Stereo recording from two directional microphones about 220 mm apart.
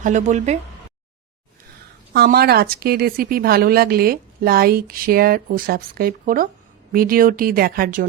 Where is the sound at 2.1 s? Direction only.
45° right (ahead or behind).